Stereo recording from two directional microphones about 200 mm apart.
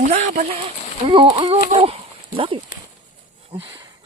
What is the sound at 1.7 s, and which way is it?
Dog, 30° right (ahead or behind).